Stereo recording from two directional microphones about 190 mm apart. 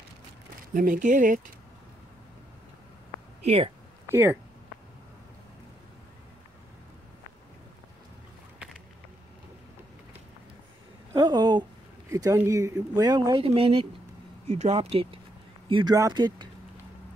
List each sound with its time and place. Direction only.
0.6 s speech: 45° right (ahead or behind)
3.4 s speech: 30° right (ahead or behind)
4.1 s speech: 15° right (ahead or behind)
11.1 s speech: 20° right (ahead or behind)